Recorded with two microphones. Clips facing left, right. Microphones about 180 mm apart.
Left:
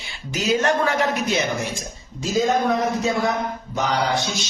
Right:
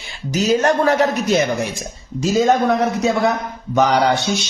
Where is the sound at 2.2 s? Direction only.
70° right (ahead or behind).